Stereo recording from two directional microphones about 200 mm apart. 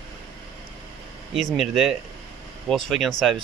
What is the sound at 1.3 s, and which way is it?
Speech, centre (ahead or behind).